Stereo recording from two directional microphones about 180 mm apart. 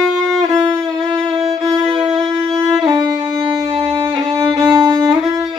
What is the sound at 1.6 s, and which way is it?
Violin, 25° right (ahead or behind).